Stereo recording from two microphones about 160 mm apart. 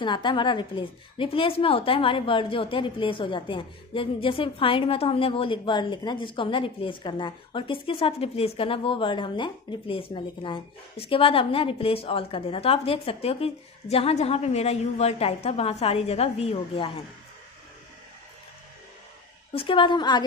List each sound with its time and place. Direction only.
0.0 s a woman's voice: 30° left (ahead or behind)
19.5 s a woman's voice: 35° left (ahead or behind)